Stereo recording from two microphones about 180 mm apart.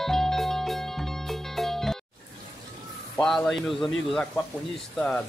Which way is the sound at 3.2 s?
Centre (ahead or behind).